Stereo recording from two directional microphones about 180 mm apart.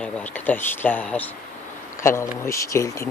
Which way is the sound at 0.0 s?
5° left (ahead or behind).